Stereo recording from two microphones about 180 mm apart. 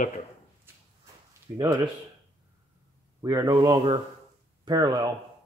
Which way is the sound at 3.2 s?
20° right (ahead or behind).